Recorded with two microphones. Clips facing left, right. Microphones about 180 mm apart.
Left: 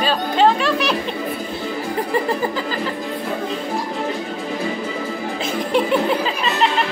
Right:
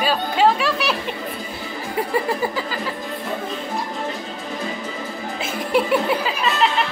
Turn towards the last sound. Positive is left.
turn(degrees=-5)  # may be behind; listen again after turning